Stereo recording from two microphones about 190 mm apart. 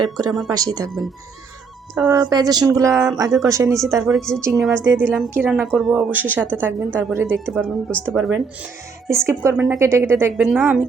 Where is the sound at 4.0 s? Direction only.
Centre (ahead or behind).